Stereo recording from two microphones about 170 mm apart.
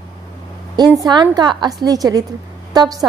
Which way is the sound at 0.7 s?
20° right (ahead or behind).